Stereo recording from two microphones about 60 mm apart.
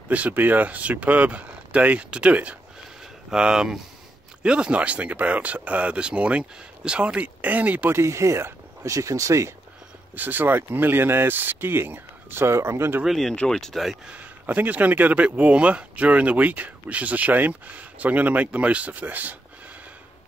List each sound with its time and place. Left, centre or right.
0.1 s speech: right
7.9 s speech: right
8.8 s speech: right
10.1 s speech: right
13.0 s speech: centre
14.4 s speech: right